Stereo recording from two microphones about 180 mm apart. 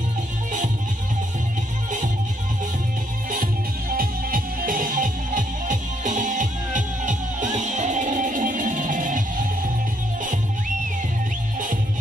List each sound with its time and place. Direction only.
3.9 s music: 55° right (ahead or behind)